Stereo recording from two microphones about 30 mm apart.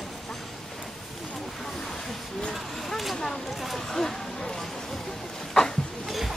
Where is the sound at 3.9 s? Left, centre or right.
Centre.